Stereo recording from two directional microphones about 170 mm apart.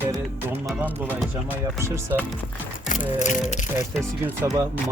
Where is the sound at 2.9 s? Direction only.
45° left (ahead or behind).